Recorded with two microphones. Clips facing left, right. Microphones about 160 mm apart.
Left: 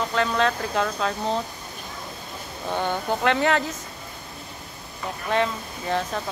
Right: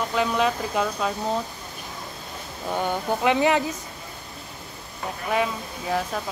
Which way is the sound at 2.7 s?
10° right (ahead or behind).